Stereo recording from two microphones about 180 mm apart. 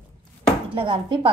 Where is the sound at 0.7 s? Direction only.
30° right (ahead or behind).